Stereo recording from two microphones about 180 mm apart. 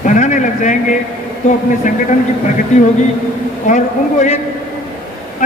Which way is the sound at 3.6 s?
40° left (ahead or behind).